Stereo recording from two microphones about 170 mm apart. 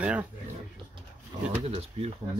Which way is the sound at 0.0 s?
10° right (ahead or behind).